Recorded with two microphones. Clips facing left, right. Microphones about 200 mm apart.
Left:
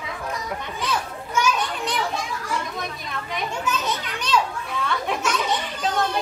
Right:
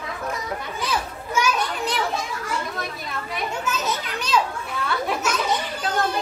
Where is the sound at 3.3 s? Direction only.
5° right (ahead or behind).